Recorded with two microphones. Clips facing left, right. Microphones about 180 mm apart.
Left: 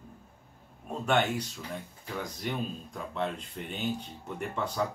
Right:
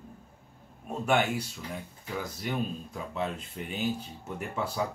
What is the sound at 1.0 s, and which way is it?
Speech, 10° right (ahead or behind).